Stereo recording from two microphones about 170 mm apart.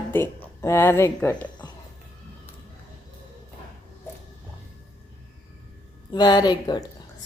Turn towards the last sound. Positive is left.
turn(degrees=25)  # may be behind; listen again after turning